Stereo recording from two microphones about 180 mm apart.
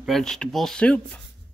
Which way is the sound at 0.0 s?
Centre (ahead or behind).